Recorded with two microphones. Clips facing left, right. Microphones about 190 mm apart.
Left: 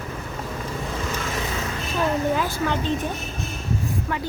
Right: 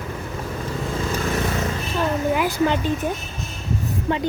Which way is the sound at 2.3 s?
10° right (ahead or behind).